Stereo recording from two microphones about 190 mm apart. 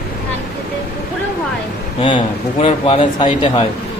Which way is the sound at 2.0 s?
30° left (ahead or behind).